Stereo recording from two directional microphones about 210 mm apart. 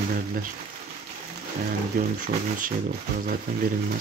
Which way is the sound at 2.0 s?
40° right (ahead or behind).